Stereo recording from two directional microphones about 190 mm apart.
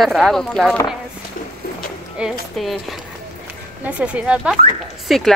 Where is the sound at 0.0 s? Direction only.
Centre (ahead or behind).